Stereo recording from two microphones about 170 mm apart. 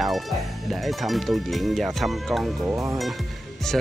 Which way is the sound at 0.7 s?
Centre (ahead or behind).